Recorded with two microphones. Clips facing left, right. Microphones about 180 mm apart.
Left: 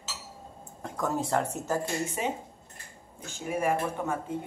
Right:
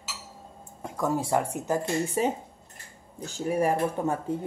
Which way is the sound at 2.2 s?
35° right (ahead or behind).